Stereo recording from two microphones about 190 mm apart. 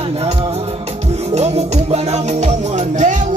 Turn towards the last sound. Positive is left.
turn(degrees=-40)  # may be behind; listen again after turning